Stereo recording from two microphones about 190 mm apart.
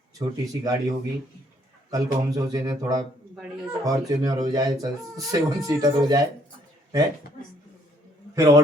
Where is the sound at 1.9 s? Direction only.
20° right (ahead or behind).